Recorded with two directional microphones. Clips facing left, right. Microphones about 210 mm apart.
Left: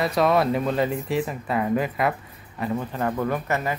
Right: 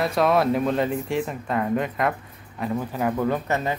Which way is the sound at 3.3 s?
20° right (ahead or behind).